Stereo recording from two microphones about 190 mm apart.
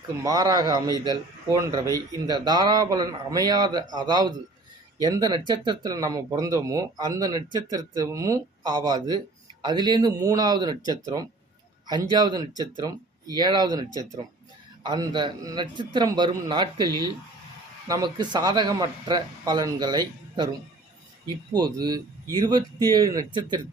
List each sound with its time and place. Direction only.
0.2 s speech: 20° right (ahead or behind)
21.5 s speech: 20° right (ahead or behind)